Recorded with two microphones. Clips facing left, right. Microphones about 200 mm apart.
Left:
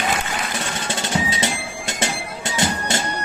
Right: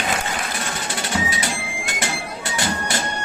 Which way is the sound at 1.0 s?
25° left (ahead or behind).